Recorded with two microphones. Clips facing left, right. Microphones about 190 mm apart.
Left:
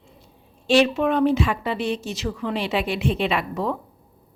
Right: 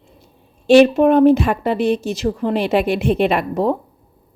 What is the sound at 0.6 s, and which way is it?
A woman's voice, 50° right (ahead or behind).